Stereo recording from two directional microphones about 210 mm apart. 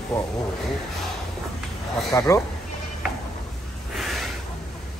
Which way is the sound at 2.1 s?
15° left (ahead or behind).